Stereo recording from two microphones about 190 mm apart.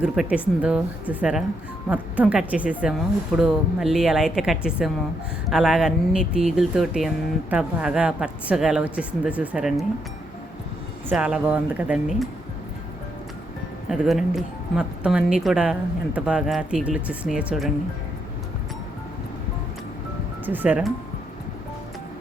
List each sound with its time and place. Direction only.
0.0 s speech: 5° right (ahead or behind)
11.1 s speech: 5° right (ahead or behind)
13.8 s speech: centre (ahead or behind)
20.4 s speech: 10° right (ahead or behind)